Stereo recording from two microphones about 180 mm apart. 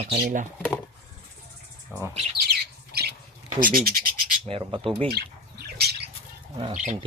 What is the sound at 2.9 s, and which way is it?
Squawk, 60° right (ahead or behind).